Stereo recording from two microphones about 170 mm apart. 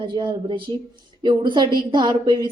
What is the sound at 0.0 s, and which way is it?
A woman's voice, 25° right (ahead or behind).